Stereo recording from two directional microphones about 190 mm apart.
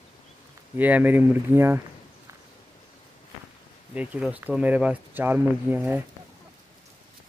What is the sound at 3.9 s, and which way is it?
Speech, 5° right (ahead or behind).